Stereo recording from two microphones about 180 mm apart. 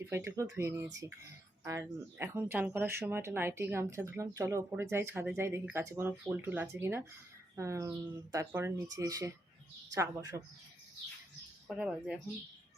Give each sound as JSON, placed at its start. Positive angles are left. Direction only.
{"t": 0.0, "sound": "speech", "side_deg": -15}
{"t": 11.7, "sound": "speech", "side_deg": -5}